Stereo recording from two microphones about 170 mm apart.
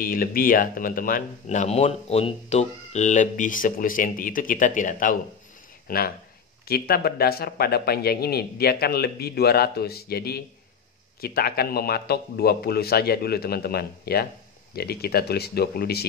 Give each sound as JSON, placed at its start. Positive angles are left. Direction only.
{"t": 0.0, "sound": "a man's voice", "side_deg": 60}